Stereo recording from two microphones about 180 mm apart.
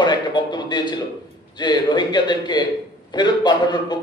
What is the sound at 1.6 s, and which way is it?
A man's voice, 25° left (ahead or behind).